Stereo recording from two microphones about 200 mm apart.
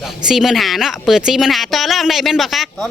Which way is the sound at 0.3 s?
Centre (ahead or behind).